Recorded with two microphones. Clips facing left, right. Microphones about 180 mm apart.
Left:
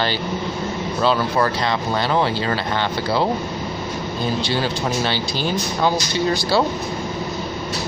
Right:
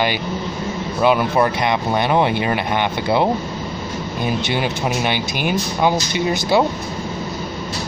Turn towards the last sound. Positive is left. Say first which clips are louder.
# right 1 dB
turn(degrees=-20)  # may be behind; listen again after turning